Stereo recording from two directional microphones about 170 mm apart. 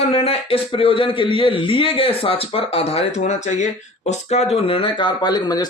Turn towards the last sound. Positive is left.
turn(degrees=25)  # may be behind; listen again after turning